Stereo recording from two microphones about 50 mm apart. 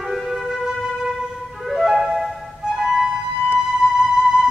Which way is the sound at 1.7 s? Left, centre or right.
Centre.